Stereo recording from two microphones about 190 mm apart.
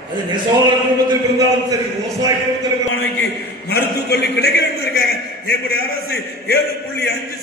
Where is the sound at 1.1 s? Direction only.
20° right (ahead or behind).